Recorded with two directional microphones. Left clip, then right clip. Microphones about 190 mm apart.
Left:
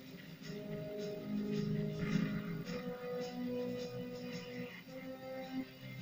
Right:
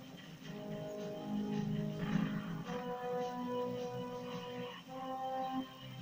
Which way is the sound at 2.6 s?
20° left (ahead or behind).